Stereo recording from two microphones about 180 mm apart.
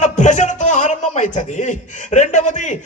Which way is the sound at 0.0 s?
40° left (ahead or behind).